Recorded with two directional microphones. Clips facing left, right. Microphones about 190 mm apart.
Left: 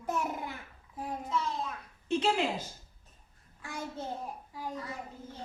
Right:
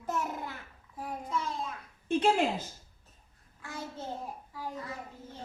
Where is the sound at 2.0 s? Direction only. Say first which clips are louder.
Right 3 dB; 50° right (ahead or behind).